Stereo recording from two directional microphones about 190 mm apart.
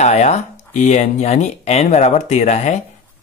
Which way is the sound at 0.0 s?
35° left (ahead or behind).